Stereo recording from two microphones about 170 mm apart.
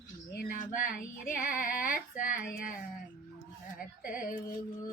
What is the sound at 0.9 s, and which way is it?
Child singing, 55° left (ahead or behind).